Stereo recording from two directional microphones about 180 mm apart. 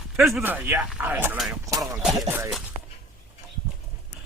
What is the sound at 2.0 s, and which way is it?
Speech, centre (ahead or behind).